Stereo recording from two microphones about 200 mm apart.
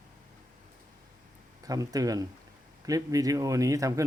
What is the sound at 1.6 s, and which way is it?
Speech, 15° right (ahead or behind).